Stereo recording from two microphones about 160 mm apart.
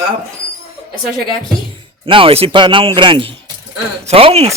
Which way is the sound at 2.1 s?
35° right (ahead or behind).